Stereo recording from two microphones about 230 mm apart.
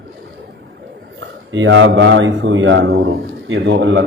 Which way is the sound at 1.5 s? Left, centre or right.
Right.